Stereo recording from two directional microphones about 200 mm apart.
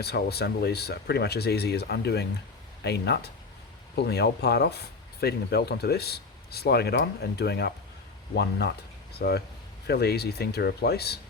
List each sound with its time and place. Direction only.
0.0 s speech: 55° left (ahead or behind)